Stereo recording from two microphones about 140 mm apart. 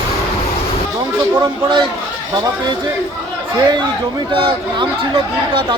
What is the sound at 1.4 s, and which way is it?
Speech, 30° right (ahead or behind).